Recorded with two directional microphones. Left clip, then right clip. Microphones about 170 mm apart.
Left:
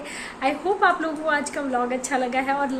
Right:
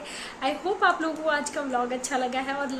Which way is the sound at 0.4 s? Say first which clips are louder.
Left 4 dB; 5° right (ahead or behind).